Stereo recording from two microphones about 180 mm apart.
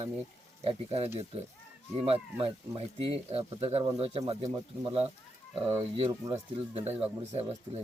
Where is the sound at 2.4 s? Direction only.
30° right (ahead or behind).